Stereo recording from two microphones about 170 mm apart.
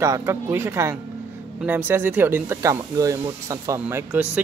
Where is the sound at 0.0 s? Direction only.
20° right (ahead or behind).